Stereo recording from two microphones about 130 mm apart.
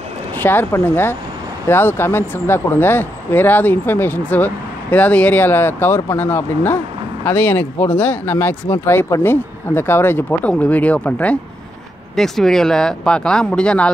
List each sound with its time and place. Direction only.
0.4 s speech: 15° left (ahead or behind)